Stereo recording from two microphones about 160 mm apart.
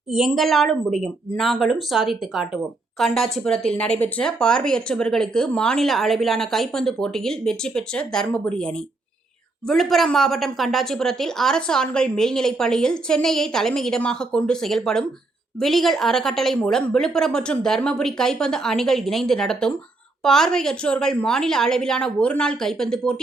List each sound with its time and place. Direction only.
0.1 s speech: centre (ahead or behind)